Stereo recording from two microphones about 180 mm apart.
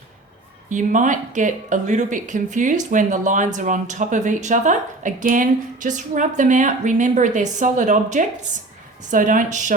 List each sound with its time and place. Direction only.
0.7 s speech: 45° right (ahead or behind)